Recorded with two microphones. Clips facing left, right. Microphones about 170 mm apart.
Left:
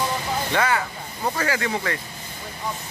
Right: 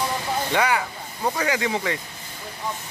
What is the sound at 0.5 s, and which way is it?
Speech, 15° right (ahead or behind).